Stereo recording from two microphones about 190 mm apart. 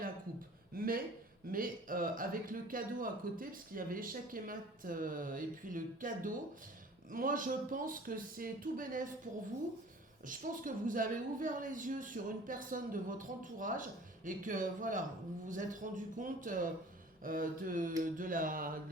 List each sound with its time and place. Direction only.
0.7 s a sound: 50° right (ahead or behind)
1.5 s a man's voice: 45° right (ahead or behind)
10.2 s a man's voice: 45° right (ahead or behind)